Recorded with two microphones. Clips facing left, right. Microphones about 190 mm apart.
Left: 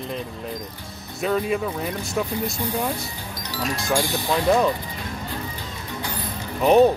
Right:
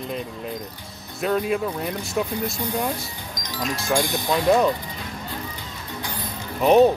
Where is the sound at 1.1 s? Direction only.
Centre (ahead or behind).